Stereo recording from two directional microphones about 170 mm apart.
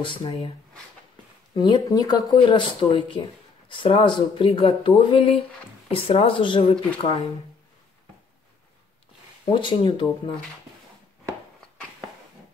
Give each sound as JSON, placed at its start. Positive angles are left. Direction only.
{"t": 0.0, "sound": "speech", "side_deg": 30}
{"t": 1.5, "sound": "speech", "side_deg": 25}
{"t": 9.5, "sound": "speech", "side_deg": 30}